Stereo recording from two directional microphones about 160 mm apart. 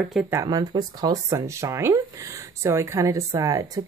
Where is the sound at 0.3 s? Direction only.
20° right (ahead or behind).